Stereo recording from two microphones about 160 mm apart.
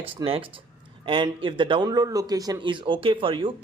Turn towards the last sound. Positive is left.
turn(degrees=-30)  # may be behind; listen again after turning